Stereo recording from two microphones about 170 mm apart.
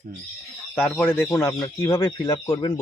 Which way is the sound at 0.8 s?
10° left (ahead or behind).